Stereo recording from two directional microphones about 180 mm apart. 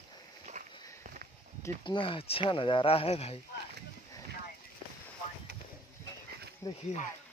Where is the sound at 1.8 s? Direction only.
30° left (ahead or behind).